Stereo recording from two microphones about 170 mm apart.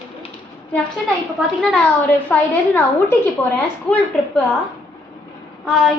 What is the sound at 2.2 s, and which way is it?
A woman's voice, 10° left (ahead or behind).